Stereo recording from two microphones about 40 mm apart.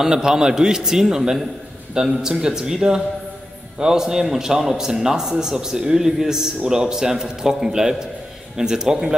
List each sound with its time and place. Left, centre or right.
0.0 s a man's voice: centre